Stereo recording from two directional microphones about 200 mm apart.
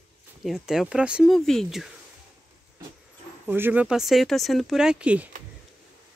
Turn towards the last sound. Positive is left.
turn(degrees=-5)  # may be behind; listen again after turning